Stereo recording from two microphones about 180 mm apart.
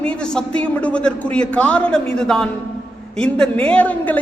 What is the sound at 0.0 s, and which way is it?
A man's voice, 5° left (ahead or behind).